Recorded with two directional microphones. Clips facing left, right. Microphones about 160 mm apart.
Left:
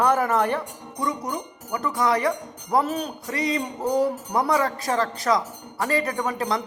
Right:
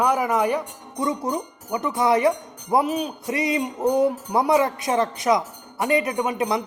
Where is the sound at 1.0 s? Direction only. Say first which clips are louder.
Right 3 dB; 25° right (ahead or behind).